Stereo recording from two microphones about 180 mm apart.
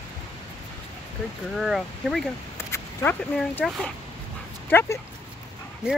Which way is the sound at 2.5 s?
15° left (ahead or behind).